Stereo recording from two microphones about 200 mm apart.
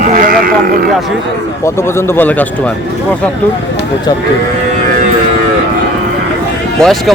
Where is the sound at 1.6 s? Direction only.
10° left (ahead or behind).